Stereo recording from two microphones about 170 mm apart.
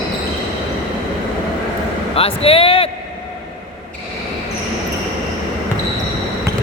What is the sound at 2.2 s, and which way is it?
Speech, 35° left (ahead or behind).